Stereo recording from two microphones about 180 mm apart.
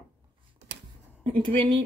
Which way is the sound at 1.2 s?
30° right (ahead or behind).